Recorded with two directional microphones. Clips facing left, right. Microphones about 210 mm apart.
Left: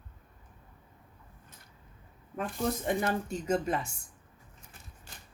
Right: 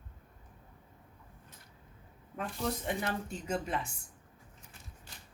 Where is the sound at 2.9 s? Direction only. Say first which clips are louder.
Left 5 dB; 45° left (ahead or behind).